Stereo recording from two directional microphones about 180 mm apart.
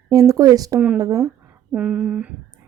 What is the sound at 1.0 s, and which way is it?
A woman's voice, 15° right (ahead or behind).